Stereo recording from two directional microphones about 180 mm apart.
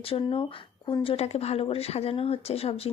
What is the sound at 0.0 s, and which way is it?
Speech, 30° left (ahead or behind).